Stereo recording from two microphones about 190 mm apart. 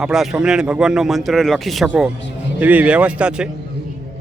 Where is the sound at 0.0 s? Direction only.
Centre (ahead or behind).